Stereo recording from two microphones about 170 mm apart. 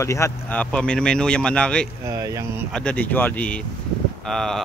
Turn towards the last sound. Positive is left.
turn(degrees=5)  # may be behind; listen again after turning